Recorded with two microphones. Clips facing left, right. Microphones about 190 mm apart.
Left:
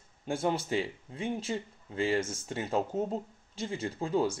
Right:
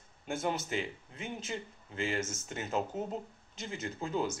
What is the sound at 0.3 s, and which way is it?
Speech, 30° left (ahead or behind).